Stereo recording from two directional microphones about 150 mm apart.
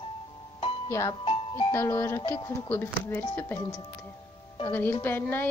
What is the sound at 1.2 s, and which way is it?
Music, 40° left (ahead or behind).